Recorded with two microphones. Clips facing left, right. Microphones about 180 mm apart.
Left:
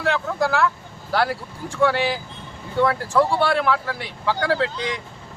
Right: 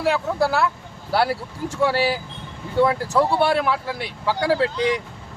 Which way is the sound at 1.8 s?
10° right (ahead or behind).